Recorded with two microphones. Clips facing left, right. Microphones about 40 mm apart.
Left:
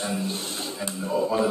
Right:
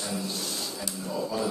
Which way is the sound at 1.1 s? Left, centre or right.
Left.